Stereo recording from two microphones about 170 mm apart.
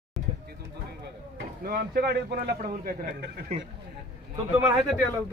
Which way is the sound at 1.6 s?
65° right (ahead or behind).